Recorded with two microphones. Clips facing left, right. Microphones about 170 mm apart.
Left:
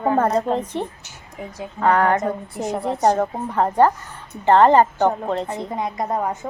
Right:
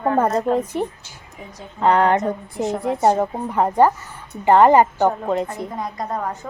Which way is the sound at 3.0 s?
10° right (ahead or behind).